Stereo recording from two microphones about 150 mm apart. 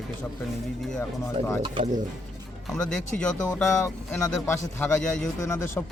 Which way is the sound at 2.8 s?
5° left (ahead or behind).